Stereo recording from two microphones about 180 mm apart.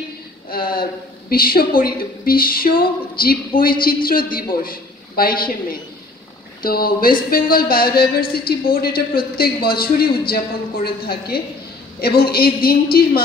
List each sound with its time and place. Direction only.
0.5 s a woman's voice: 55° left (ahead or behind)